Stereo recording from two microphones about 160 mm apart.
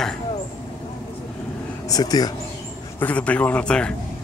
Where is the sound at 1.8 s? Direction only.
25° left (ahead or behind).